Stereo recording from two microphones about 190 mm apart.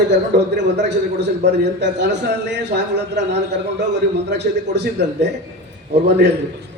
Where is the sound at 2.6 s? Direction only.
65° right (ahead or behind).